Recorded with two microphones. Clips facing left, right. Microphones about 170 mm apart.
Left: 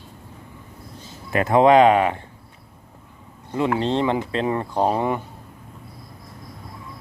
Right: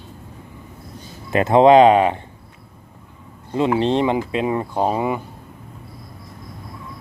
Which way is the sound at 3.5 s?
20° right (ahead or behind).